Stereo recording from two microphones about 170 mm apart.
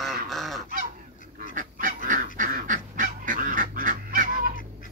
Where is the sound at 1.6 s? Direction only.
50° right (ahead or behind).